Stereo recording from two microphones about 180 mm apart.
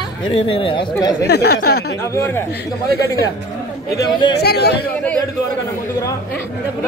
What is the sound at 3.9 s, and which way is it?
Speech, 25° left (ahead or behind).